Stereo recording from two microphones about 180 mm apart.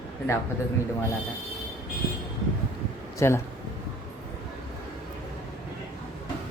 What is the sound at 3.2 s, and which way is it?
Speech, 15° left (ahead or behind).